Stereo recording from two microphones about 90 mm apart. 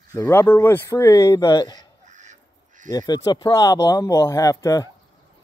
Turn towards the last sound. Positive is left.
turn(degrees=40)  # may be behind; listen again after turning